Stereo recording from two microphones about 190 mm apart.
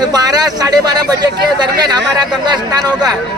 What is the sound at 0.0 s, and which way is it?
Speech, 20° right (ahead or behind).